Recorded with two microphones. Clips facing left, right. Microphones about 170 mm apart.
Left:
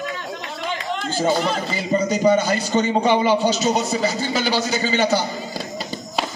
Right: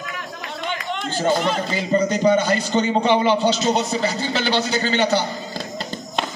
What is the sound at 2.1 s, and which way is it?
A man's voice, 10° left (ahead or behind).